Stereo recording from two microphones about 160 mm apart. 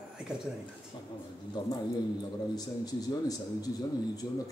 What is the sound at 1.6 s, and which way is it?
Speech, 25° left (ahead or behind).